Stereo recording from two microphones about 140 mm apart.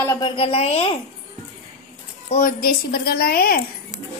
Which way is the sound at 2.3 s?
80° left.